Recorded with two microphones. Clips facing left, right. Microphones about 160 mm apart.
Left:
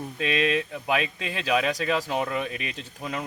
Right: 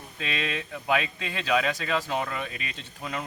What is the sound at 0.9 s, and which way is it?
Speech, 5° left (ahead or behind).